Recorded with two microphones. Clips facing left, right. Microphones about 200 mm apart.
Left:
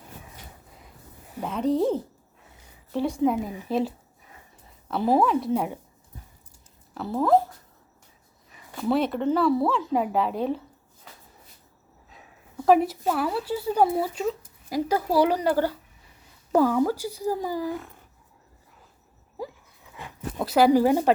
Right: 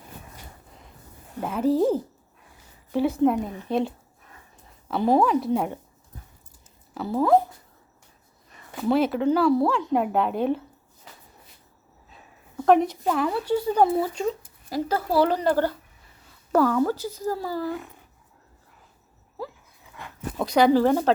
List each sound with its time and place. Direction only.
1.4 s a woman's voice: 5° right (ahead or behind)
6.9 s a woman's voice: centre (ahead or behind)
8.7 s a woman's voice: centre (ahead or behind)
12.6 s speech: 5° left (ahead or behind)
20.0 s speech: 5° left (ahead or behind)